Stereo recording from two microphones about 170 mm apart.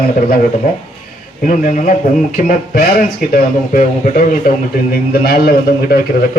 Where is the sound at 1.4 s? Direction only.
50° left (ahead or behind).